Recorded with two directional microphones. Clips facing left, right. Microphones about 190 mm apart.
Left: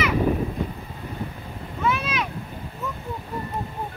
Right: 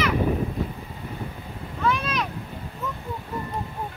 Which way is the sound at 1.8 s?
5° left (ahead or behind).